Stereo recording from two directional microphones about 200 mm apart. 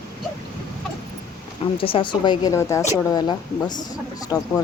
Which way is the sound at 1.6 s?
25° left (ahead or behind).